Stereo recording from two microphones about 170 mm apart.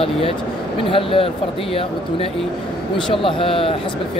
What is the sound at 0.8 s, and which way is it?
Speech, 30° left (ahead or behind).